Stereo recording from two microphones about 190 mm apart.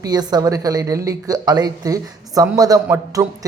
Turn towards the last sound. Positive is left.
turn(degrees=-20)  # may be behind; listen again after turning